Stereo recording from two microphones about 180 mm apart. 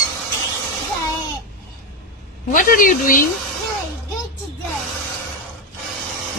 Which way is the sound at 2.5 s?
50° left (ahead or behind).